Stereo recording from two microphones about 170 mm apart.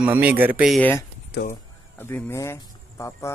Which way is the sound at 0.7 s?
10° left (ahead or behind).